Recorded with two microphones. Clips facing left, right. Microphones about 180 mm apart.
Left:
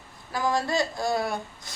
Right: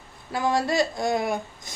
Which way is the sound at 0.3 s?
25° right (ahead or behind).